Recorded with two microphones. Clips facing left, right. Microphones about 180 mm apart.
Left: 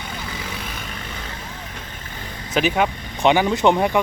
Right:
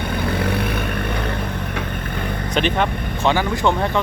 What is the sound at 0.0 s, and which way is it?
Vehicle, 60° right (ahead or behind).